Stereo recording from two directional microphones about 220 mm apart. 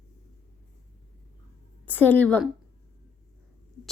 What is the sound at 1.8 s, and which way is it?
Speech, 10° left (ahead or behind).